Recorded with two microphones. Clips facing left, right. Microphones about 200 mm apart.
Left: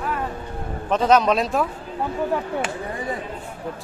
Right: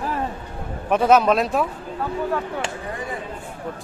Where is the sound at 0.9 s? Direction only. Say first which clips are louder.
Right 1 dB; 10° right (ahead or behind).